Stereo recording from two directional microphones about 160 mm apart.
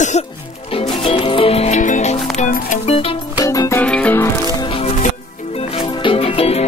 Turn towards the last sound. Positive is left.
turn(degrees=40)  # may be behind; listen again after turning